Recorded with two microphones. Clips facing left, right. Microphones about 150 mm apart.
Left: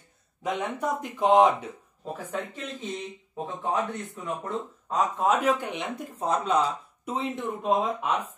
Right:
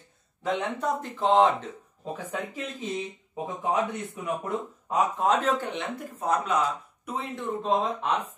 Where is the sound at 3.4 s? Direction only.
15° right (ahead or behind).